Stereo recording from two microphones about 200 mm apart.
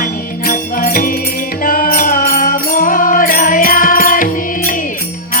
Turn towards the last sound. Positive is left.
turn(degrees=45)  # may be behind; listen again after turning